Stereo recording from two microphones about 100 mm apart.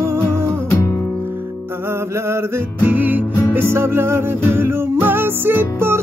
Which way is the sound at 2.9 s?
20° right (ahead or behind).